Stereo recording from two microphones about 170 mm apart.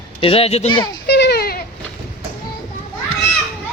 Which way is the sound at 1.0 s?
75° left (ahead or behind).